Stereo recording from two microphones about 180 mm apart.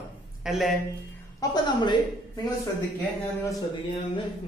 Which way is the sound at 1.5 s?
25° left (ahead or behind).